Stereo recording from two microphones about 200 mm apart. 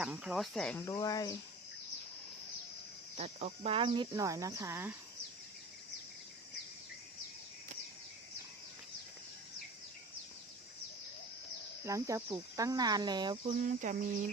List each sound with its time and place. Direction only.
0.0 s speech: 5° right (ahead or behind)
0.9 s speech: 20° left (ahead or behind)
3.2 s speech: 30° right (ahead or behind); by 4.9 s 10° right (ahead or behind)
11.9 s speech: 15° right (ahead or behind)
13.7 s a sound: 40° right (ahead or behind)